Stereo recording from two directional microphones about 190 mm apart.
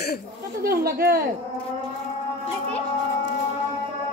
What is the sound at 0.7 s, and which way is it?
Speech, 55° right (ahead or behind).